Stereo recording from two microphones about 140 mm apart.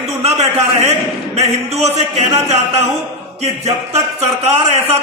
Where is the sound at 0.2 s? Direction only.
50° right (ahead or behind).